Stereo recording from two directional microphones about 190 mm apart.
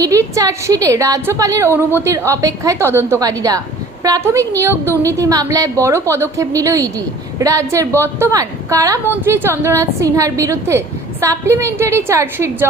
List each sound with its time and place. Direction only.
0.3 s a woman's voice: 20° right (ahead or behind)